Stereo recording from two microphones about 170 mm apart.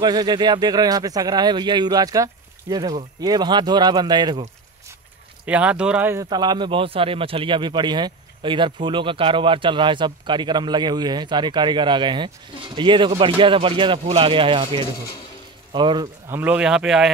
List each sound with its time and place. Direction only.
0.0 s speech: 25° right (ahead or behind)
5.4 s speech: 5° right (ahead or behind)
6.2 s speech: 25° right (ahead or behind)
16.3 s a man's voice: 10° right (ahead or behind)